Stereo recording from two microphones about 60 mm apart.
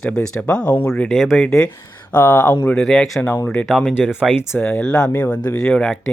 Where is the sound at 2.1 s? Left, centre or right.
Left.